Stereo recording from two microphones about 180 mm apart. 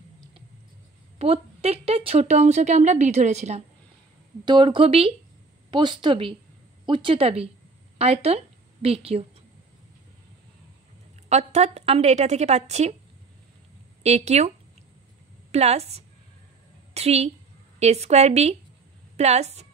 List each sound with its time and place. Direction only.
1.1 s a woman's voice: 35° right (ahead or behind)
4.5 s a woman's voice: 25° right (ahead or behind)
11.2 s a woman's voice: 40° right (ahead or behind)
14.0 s a woman's voice: 35° right (ahead or behind)
15.5 s a woman's voice: 35° right (ahead or behind)